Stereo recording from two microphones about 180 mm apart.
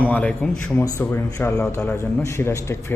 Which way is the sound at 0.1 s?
5° left (ahead or behind).